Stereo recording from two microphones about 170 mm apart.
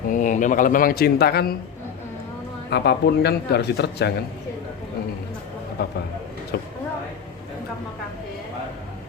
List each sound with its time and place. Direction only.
0.1 s a man's voice: 50° left (ahead or behind); by 1.5 s 65° left (ahead or behind)
2.6 s speech: 75° left (ahead or behind)
5.8 s speech: 75° left (ahead or behind)